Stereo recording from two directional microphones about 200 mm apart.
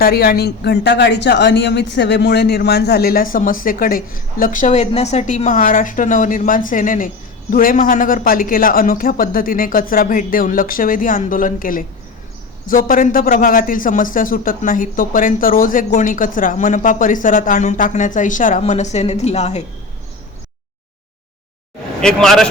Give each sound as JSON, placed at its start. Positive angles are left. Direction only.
{"t": 0.0, "sound": "a man's voice", "side_deg": 50}
{"t": 22.0, "sound": "speech", "side_deg": 5}